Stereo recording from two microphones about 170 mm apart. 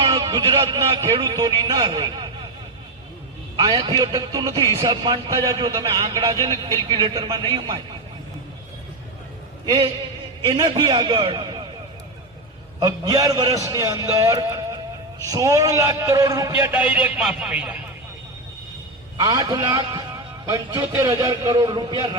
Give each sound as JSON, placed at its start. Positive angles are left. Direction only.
{"t": 0.0, "sound": "a man's voice", "side_deg": -25}
{"t": 3.6, "sound": "a man's voice", "side_deg": -25}
{"t": 9.6, "sound": "a man's voice", "side_deg": -30}
{"t": 12.8, "sound": "a man's voice", "side_deg": -20}
{"t": 19.2, "sound": "a man's voice", "side_deg": -20}